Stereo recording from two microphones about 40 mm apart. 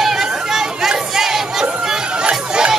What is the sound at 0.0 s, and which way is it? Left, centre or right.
Chatter, centre.